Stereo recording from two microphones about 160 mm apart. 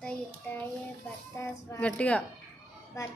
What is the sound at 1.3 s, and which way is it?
Female singing, 15° left (ahead or behind).